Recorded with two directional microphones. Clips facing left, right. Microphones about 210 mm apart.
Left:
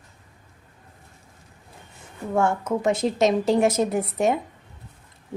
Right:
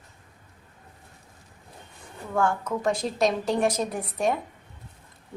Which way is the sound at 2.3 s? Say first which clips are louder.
Left 3 dB; 25° left (ahead or behind).